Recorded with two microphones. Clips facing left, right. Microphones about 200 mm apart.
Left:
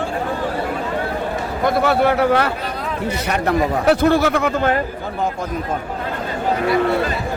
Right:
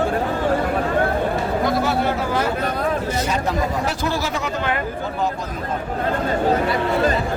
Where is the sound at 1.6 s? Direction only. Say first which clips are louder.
Left 7 dB; 60° left (ahead or behind).